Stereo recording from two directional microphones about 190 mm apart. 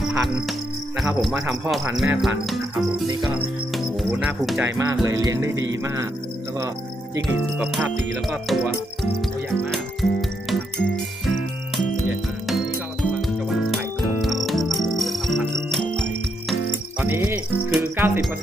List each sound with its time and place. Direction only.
0.0 s music: centre (ahead or behind)
0.9 s cricket: 5° right (ahead or behind)
4.1 s music: 10° right (ahead or behind)
4.4 s cricket: 5° right (ahead or behind)
4.8 s music: 15° right (ahead or behind)
7.6 s cricket: 5° right (ahead or behind)
9.7 s music: centre (ahead or behind)
13.0 s music: centre (ahead or behind)
17.0 s cricket: 10° right (ahead or behind)